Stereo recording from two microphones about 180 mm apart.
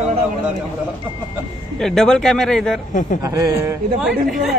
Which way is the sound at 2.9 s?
45° left (ahead or behind).